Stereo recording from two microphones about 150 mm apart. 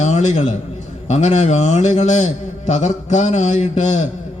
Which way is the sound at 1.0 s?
50° left (ahead or behind).